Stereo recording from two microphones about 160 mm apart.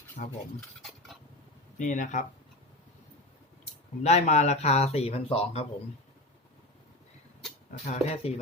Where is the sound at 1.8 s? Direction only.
50° left (ahead or behind).